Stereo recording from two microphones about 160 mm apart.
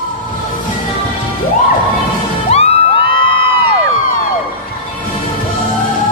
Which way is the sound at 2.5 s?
35° left (ahead or behind).